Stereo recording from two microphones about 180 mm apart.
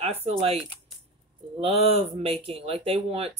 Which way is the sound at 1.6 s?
35° right (ahead or behind).